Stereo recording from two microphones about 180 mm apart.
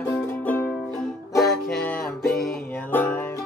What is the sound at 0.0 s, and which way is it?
Music, 10° left (ahead or behind).